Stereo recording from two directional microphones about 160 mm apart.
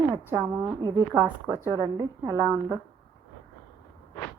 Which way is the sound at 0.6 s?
15° right (ahead or behind).